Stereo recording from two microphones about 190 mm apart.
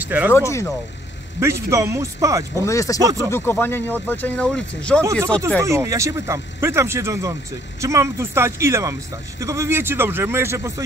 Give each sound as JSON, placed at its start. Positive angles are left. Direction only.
{"t": 0.0, "sound": "speech", "side_deg": -10}
{"t": 0.3, "sound": "speech", "side_deg": 15}
{"t": 1.4, "sound": "speech", "side_deg": -15}
{"t": 2.6, "sound": "speech", "side_deg": 15}
{"t": 3.0, "sound": "speech", "side_deg": -20}
{"t": 3.3, "sound": "speech", "side_deg": 10}
{"t": 5.6, "sound": "speech", "side_deg": -15}